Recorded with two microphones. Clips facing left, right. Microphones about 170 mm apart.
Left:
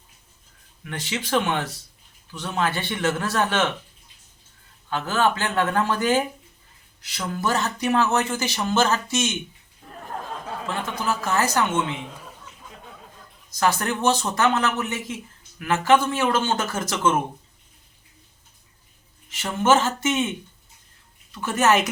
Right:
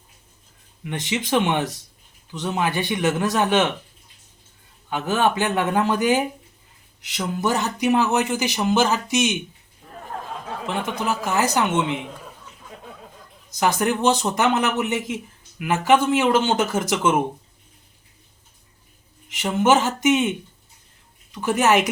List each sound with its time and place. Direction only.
0.9 s speech: 20° right (ahead or behind)
4.9 s speech: 20° right (ahead or behind)
9.9 s a sound: centre (ahead or behind)
10.7 s speech: 15° right (ahead or behind)
13.5 s speech: 15° right (ahead or behind)
19.3 s speech: 15° right (ahead or behind)
21.3 s speech: 15° right (ahead or behind)